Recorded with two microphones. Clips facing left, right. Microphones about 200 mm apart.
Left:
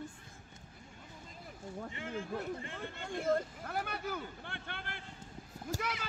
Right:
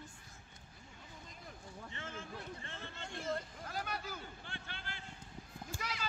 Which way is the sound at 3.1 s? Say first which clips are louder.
Left 8 dB; 50° left (ahead or behind).